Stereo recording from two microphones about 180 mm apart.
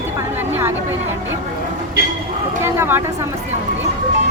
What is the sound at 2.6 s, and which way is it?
Speech, 15° right (ahead or behind).